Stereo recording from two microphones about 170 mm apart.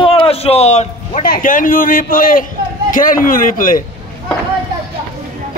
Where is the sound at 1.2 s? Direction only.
55° left (ahead or behind).